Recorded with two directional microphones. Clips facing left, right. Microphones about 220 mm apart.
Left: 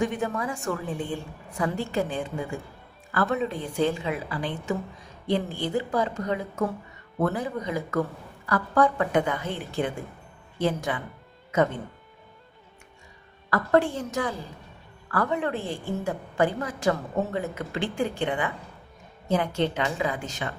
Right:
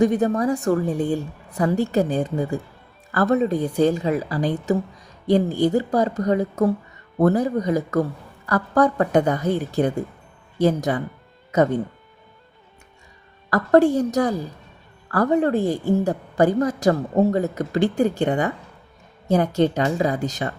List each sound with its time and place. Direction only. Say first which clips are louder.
0.0 s a woman's voice: right 9 dB; 40° right (ahead or behind)
13.5 s a woman's voice: right 7 dB; 40° right (ahead or behind)